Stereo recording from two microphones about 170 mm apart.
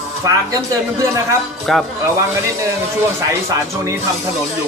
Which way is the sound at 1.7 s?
Centre (ahead or behind).